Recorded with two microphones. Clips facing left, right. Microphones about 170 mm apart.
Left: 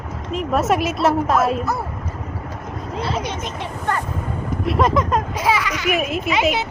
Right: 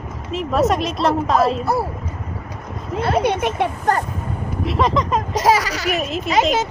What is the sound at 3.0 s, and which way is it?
Speech, 60° right (ahead or behind).